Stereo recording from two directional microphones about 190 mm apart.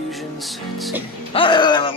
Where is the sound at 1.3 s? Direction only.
25° left (ahead or behind).